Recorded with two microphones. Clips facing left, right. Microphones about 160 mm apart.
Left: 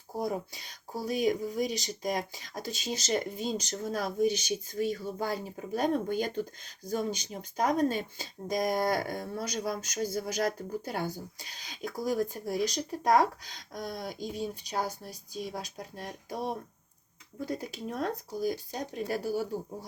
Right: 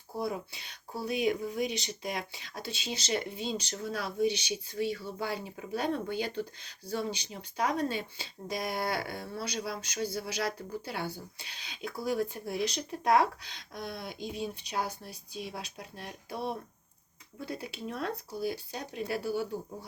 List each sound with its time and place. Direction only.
0.2 s speech: 40° left (ahead or behind)